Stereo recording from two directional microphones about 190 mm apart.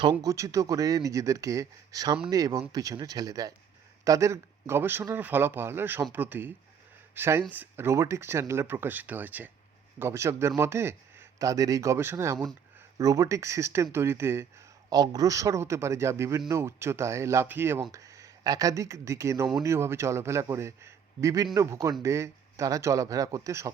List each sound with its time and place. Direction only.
0.0 s a man's voice: 20° right (ahead or behind)